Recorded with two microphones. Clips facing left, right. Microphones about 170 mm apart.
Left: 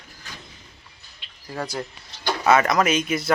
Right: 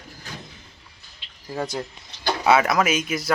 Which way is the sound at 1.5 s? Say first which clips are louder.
Right 1 dB; 20° right (ahead or behind).